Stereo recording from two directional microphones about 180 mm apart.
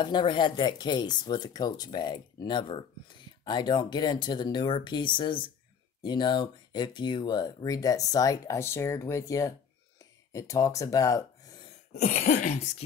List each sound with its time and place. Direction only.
0.0 s speech: 25° left (ahead or behind)
11.9 s cough: 40° left (ahead or behind)